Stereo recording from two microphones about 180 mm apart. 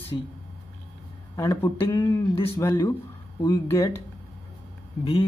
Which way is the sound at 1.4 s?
20° left (ahead or behind).